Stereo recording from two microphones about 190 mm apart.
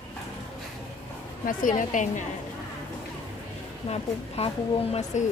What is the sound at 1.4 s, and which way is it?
Speech, 45° left (ahead or behind).